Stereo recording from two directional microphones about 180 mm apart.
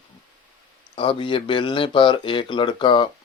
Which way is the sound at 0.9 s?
25° left (ahead or behind).